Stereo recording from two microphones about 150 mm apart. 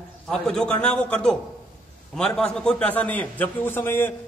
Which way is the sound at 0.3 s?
5° left (ahead or behind).